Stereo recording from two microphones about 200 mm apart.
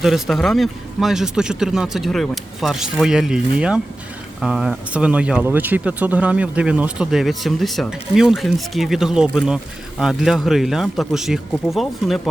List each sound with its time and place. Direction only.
0.0 s speech: centre (ahead or behind)